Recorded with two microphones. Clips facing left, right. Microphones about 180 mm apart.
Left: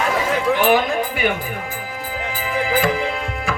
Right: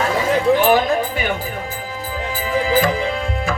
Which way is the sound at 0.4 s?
35° right (ahead or behind).